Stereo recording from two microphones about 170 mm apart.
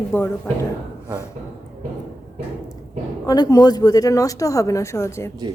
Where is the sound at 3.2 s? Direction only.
20° left (ahead or behind).